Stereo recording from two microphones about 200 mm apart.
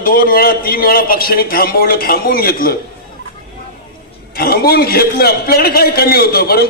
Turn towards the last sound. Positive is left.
turn(degrees=50)  # may be behind; listen again after turning